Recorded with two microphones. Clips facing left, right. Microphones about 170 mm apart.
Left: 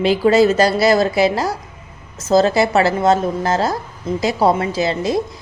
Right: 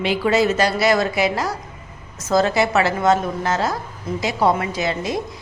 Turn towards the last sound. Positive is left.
turn(degrees=30)  # may be behind; listen again after turning